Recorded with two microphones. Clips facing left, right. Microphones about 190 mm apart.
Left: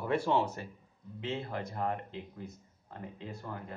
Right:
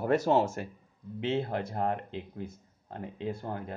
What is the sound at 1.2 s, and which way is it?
A man's voice, 65° right (ahead or behind).